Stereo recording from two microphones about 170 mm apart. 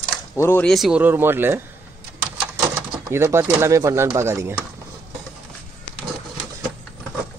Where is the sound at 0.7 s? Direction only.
5° right (ahead or behind).